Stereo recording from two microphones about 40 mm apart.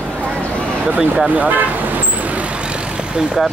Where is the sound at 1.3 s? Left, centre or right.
Right.